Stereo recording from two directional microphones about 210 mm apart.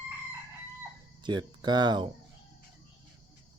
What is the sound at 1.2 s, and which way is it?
Speech, 20° right (ahead or behind).